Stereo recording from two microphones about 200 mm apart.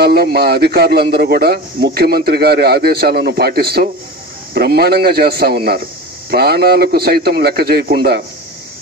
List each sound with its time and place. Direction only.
0.0 s a man's voice: 50° right (ahead or behind)